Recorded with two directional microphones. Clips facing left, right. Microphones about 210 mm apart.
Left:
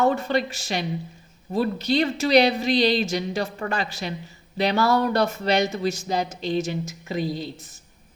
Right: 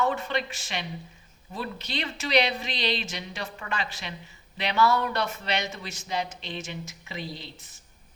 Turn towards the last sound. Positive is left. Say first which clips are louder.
# left 10 dB
turn(degrees=45)  # may be behind; listen again after turning